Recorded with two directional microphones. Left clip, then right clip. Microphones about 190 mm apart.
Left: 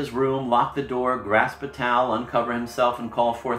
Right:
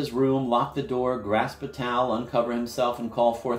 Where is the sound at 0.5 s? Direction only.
40° right (ahead or behind).